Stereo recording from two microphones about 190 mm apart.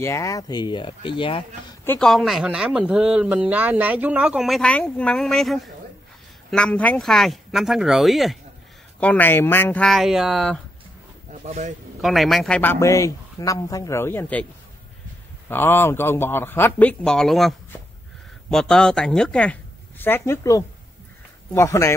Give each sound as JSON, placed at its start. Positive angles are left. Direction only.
{"t": 0.0, "sound": "speech", "side_deg": 15}
{"t": 1.9, "sound": "speech", "side_deg": 0}
{"t": 9.0, "sound": "speech", "side_deg": 10}
{"t": 11.4, "sound": "a man's voice", "side_deg": -35}
{"t": 12.0, "sound": "a man's voice", "side_deg": 0}
{"t": 15.4, "sound": "a man's voice", "side_deg": 10}